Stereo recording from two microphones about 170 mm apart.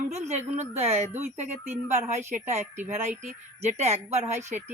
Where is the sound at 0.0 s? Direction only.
40° right (ahead or behind).